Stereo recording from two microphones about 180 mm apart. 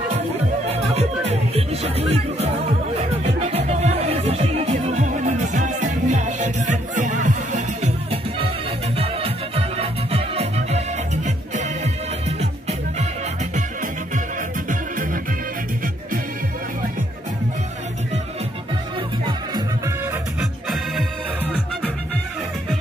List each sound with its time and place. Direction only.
0.7 s music: 35° right (ahead or behind)
14.7 s music: 50° right (ahead or behind)
20.1 s music: 5° right (ahead or behind)